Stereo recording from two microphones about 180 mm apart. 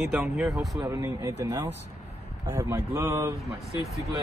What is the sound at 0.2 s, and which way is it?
Speech, 5° right (ahead or behind).